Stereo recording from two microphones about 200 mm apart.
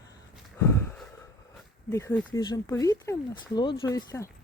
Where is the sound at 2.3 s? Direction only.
20° left (ahead or behind).